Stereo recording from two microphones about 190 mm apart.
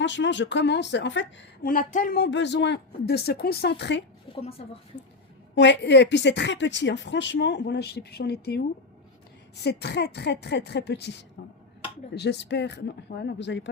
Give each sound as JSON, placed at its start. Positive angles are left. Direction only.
{"t": 0.0, "sound": "a woman's voice", "side_deg": 70}
{"t": 1.6, "sound": "speech", "side_deg": 45}
{"t": 4.4, "sound": "a woman's voice", "side_deg": 30}
{"t": 5.5, "sound": "a woman's voice", "side_deg": 65}